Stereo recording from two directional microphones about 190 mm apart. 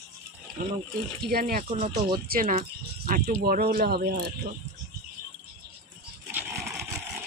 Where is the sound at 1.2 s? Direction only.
50° right (ahead or behind).